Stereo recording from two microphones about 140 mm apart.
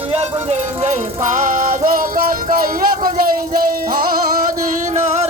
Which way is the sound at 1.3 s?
65° right (ahead or behind).